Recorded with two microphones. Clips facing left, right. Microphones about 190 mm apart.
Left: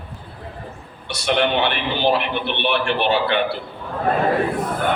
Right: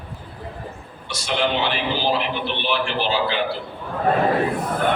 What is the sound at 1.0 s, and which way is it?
A man's voice, 60° left (ahead or behind).